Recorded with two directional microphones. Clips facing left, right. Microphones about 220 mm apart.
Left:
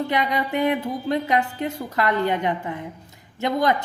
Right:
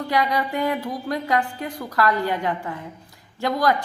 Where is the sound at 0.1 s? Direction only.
20° left (ahead or behind).